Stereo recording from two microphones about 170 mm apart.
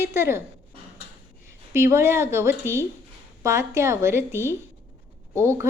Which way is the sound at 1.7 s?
15° right (ahead or behind).